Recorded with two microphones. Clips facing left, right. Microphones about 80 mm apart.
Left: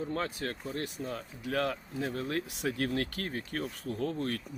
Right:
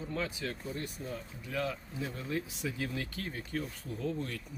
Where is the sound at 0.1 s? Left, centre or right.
Left.